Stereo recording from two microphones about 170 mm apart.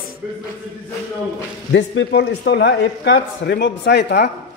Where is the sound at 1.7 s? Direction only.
90° left.